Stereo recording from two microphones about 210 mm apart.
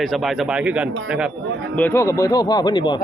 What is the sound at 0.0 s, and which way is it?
Speech, centre (ahead or behind).